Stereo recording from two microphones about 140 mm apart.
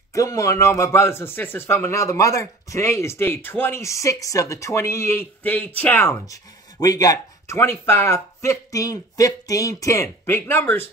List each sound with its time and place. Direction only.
0.1 s speech: 20° left (ahead or behind)